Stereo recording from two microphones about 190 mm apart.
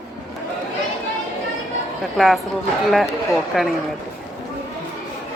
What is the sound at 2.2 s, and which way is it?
A woman's voice, centre (ahead or behind).